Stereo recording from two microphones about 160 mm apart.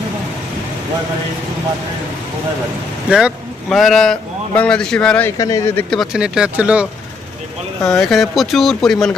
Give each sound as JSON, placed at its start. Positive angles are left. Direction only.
{"t": 3.1, "sound": "a man's voice", "side_deg": -5}
{"t": 5.4, "sound": "speech", "side_deg": 20}
{"t": 5.9, "sound": "speech", "side_deg": 0}
{"t": 7.9, "sound": "speech", "side_deg": 0}